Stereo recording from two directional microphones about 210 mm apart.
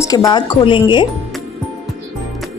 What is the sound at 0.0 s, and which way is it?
A woman's voice, 15° left (ahead or behind).